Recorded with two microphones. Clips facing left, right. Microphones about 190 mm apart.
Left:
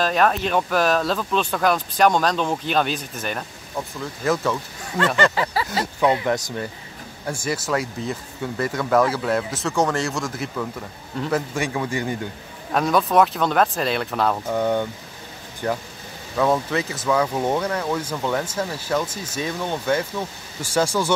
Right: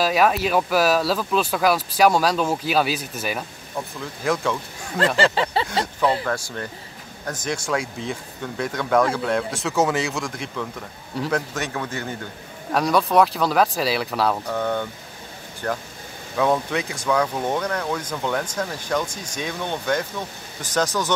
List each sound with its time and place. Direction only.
0.0 s speech: 5° right (ahead or behind)
5.3 s a sound: 25° right (ahead or behind)
5.9 s speech: 15° left (ahead or behind)
12.7 s speech: centre (ahead or behind)
14.5 s speech: 15° left (ahead or behind)